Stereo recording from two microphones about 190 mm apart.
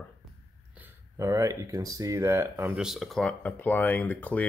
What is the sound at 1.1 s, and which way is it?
Speech, 15° right (ahead or behind).